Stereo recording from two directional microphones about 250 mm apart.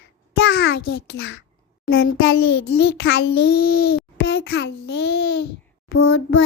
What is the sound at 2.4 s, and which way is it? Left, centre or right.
Speech, left.